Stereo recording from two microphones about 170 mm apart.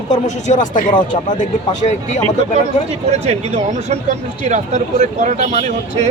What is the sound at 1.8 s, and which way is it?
Speech, 40° left (ahead or behind).